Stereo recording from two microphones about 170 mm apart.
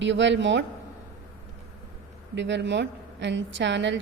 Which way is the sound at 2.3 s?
90° right.